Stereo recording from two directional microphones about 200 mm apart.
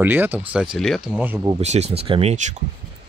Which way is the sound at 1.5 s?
35° right (ahead or behind).